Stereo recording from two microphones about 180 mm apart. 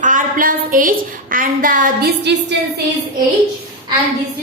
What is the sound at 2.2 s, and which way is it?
Speech, 75° right (ahead or behind).